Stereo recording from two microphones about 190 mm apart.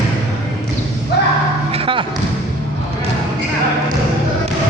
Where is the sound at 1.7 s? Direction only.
30° right (ahead or behind).